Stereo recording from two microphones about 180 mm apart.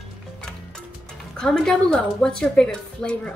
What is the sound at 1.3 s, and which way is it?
A woman's voice, 5° left (ahead or behind).